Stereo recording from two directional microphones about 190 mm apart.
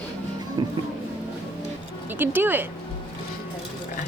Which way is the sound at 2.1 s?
10° right (ahead or behind).